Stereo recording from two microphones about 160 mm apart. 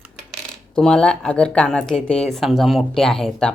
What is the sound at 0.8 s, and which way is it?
Speech, 5° left (ahead or behind).